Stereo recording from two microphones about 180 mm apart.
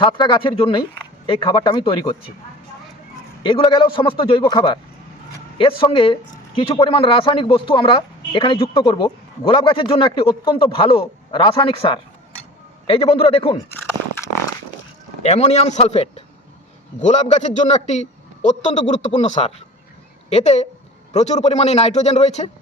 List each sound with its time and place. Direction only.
0.0 s a man's voice: 25° left (ahead or behind)
3.4 s a man's voice: 25° left (ahead or behind)
15.2 s a man's voice: 40° left (ahead or behind)